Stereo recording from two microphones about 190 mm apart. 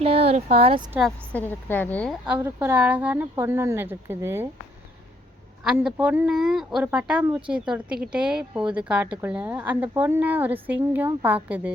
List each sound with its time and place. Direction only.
0.0 s speech: 30° right (ahead or behind)
0.9 s a woman's voice: 5° left (ahead or behind)
2.2 s a woman's voice: 10° right (ahead or behind)
5.6 s a woman's voice: 5° right (ahead or behind)